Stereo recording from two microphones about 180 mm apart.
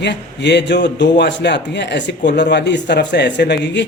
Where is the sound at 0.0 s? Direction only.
75° left (ahead or behind).